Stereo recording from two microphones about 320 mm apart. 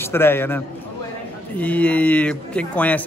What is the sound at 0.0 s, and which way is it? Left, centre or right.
Speech, centre.